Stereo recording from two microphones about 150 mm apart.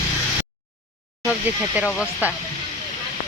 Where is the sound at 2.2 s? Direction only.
10° right (ahead or behind).